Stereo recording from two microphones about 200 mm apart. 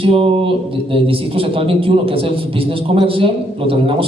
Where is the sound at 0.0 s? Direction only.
25° right (ahead or behind).